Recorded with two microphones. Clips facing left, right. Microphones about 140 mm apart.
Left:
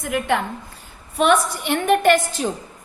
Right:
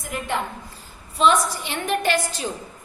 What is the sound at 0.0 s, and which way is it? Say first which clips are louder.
A woman's voice: left 5 dB; 65° left (ahead or behind).